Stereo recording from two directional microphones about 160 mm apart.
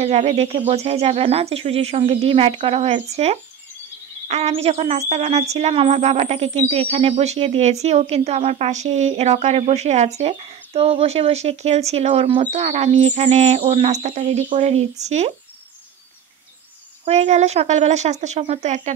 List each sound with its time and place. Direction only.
0.0 s speech: 40° right (ahead or behind)
17.0 s speech: 45° right (ahead or behind)